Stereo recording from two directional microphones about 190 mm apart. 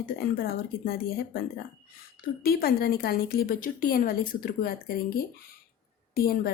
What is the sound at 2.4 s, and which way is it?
Speech, 50° left (ahead or behind).